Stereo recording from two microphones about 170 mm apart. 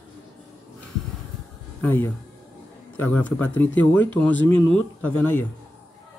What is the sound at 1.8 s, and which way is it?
A man's voice, 10° left (ahead or behind).